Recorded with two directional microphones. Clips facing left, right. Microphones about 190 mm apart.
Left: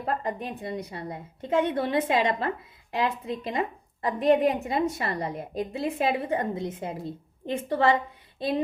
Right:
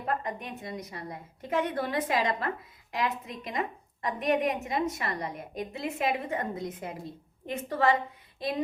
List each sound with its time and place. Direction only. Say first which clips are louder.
0.2 s a woman's voice: left 5 dB; 30° left (ahead or behind)